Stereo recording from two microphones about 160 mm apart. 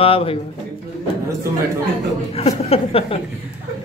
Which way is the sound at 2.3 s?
40° left (ahead or behind).